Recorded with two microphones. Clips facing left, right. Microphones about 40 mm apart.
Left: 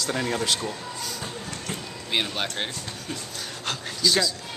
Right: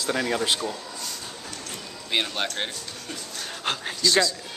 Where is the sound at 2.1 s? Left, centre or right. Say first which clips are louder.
Right 1 dB; centre.